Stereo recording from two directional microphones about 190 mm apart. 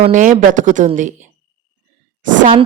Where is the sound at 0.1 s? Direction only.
45° right (ahead or behind).